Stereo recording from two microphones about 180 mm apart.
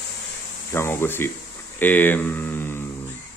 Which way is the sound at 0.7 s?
15° left (ahead or behind).